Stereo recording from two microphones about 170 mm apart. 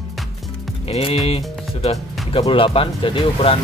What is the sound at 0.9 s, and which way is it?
Speech, 35° left (ahead or behind).